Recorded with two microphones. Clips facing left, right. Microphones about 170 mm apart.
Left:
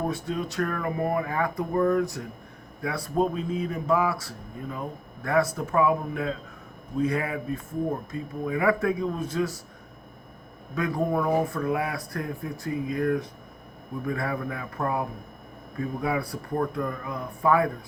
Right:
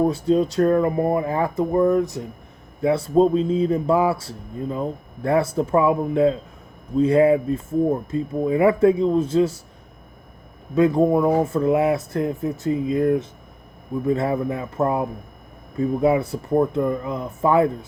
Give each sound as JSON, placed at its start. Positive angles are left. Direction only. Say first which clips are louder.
{"t": 0.1, "sound": "speech", "louder": "right 11 dB", "side_deg": -30}
{"t": 10.8, "sound": "speech", "louder": "right 9 dB", "side_deg": -25}